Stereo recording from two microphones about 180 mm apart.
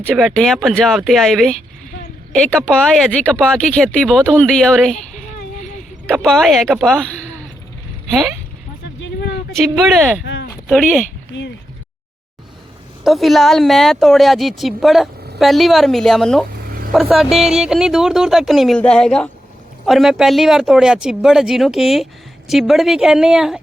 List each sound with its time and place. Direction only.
0.0 s speech: 5° left (ahead or behind)
2.6 s speech: 5° left (ahead or behind)
4.9 s a sound: 40° left (ahead or behind)
6.2 s speech: centre (ahead or behind)
9.6 s speech: centre (ahead or behind)
10.2 s a sound: 80° left
10.7 s speech: centre (ahead or behind)
13.1 s speech: centre (ahead or behind)
16.6 s vehicle: 55° right (ahead or behind)
16.9 s speech: centre (ahead or behind)